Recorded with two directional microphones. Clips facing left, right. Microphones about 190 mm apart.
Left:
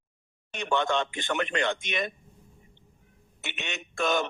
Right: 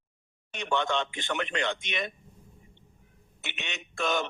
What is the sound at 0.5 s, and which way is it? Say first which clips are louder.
Speech: left 2 dB; 50° left (ahead or behind).